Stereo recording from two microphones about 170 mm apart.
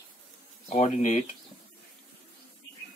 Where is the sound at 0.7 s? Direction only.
40° left (ahead or behind).